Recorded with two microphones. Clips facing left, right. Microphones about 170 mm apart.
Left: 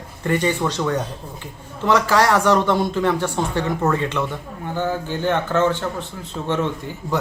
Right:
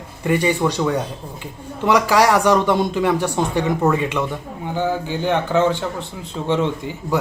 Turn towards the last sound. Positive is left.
turn(degrees=-15)  # may be behind; listen again after turning